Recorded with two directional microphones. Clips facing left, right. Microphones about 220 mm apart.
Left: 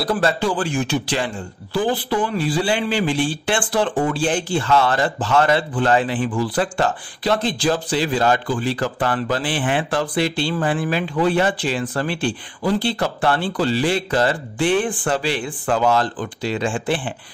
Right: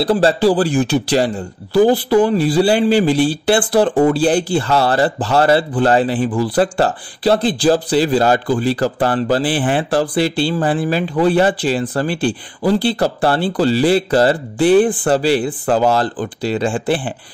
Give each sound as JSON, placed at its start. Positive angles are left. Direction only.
{"t": 0.0, "sound": "a man's voice", "side_deg": -30}